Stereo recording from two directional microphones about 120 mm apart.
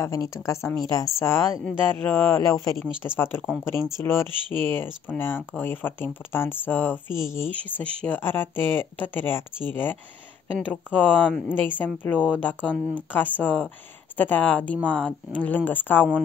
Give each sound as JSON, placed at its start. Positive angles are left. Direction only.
{"t": 0.0, "sound": "speech", "side_deg": 25}
{"t": 1.6, "sound": "speech", "side_deg": 10}
{"t": 2.5, "sound": "speech", "side_deg": 25}
{"t": 7.7, "sound": "speech", "side_deg": 10}